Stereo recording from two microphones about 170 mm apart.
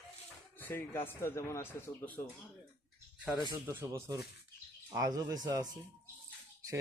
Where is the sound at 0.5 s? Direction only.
10° left (ahead or behind).